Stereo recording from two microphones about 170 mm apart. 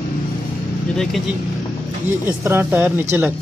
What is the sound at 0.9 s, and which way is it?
Speech, centre (ahead or behind).